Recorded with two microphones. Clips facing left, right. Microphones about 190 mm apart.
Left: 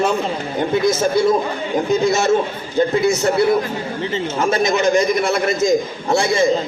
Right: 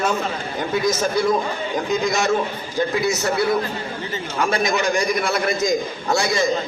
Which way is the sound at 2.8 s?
25° left (ahead or behind).